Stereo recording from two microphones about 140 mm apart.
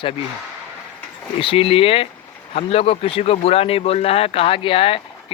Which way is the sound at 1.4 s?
40° left (ahead or behind).